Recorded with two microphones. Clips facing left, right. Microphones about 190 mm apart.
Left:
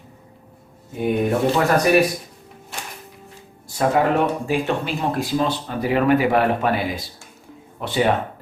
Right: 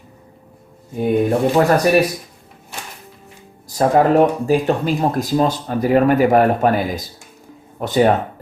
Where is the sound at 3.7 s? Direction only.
40° right (ahead or behind).